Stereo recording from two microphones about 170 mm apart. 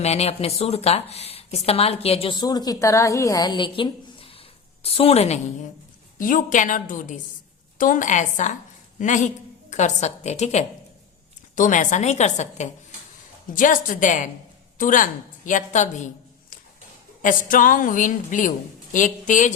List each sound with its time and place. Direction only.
0.0 s speech: 40° left (ahead or behind)
6.1 s a woman's voice: 55° left (ahead or behind)
17.2 s a woman's voice: 55° left (ahead or behind)